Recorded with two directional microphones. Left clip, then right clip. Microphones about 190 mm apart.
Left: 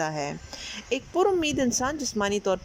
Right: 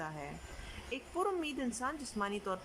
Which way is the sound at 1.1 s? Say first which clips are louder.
Left 12 dB; 35° left (ahead or behind).